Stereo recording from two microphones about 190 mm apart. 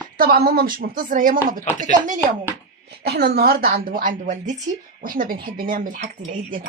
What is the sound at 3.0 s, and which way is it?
A woman's voice, 55° right (ahead or behind).